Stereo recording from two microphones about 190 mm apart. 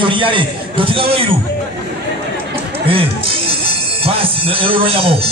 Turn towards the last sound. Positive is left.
turn(degrees=-30)  # may be behind; listen again after turning